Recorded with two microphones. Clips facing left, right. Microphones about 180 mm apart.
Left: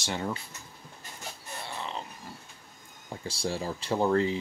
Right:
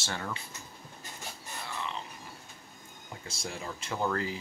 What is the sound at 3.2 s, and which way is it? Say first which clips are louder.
Speech: left 8 dB; 30° left (ahead or behind).